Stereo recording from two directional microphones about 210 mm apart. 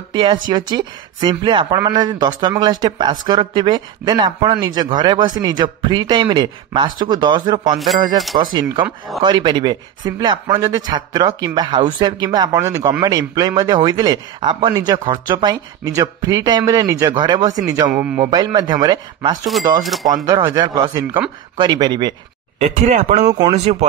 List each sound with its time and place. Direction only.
0.1 s speech: 20° right (ahead or behind)
18.0 s speech: 5° right (ahead or behind)
18.3 s speech: 20° right (ahead or behind)
19.8 s speech: centre (ahead or behind)
20.2 s speech: 20° right (ahead or behind)
22.6 s speech: 30° right (ahead or behind)
23.2 s speech: 20° right (ahead or behind)
23.5 s speech: 30° right (ahead or behind)